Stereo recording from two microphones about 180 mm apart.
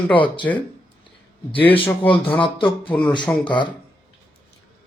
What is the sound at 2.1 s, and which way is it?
Speech, 30° left (ahead or behind).